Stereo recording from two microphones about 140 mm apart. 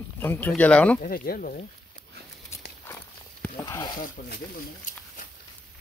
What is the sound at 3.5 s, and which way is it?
Speech, 25° left (ahead or behind).